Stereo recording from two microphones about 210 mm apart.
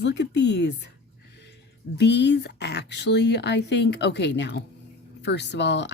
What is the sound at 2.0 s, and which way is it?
Speech, 55° left (ahead or behind).